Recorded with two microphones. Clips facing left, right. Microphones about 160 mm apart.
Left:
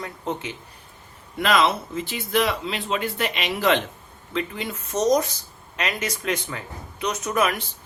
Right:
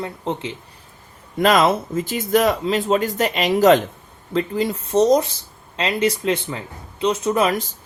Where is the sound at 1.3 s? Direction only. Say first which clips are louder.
Right 5 dB; 45° right (ahead or behind).